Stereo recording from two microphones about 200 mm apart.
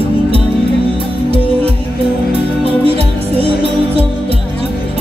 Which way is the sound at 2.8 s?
30° right (ahead or behind).